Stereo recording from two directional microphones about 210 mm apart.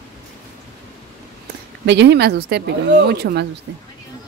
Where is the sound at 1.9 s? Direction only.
55° right (ahead or behind).